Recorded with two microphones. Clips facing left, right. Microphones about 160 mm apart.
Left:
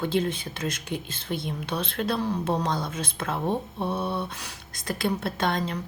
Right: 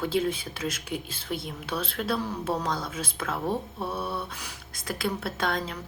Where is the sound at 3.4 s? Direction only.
25° left (ahead or behind).